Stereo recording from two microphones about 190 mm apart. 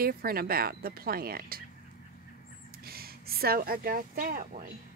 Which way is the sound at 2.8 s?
50° right (ahead or behind).